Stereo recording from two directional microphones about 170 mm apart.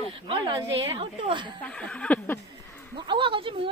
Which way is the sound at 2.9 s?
30° right (ahead or behind).